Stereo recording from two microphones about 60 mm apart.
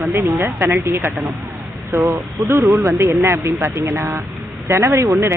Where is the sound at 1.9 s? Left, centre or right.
Right.